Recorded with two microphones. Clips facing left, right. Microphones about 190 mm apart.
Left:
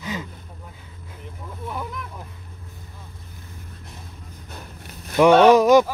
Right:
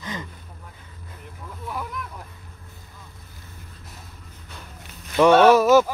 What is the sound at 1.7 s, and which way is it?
Vehicle, centre (ahead or behind).